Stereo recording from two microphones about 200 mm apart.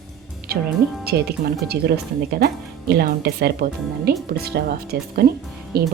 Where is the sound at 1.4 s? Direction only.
45° right (ahead or behind).